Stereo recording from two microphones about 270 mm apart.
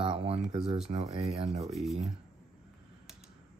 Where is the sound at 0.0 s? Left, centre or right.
Centre.